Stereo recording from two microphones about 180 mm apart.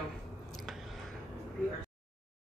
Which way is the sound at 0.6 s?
Centre (ahead or behind).